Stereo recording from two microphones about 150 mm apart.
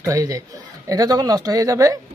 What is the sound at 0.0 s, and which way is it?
Speech, 20° right (ahead or behind).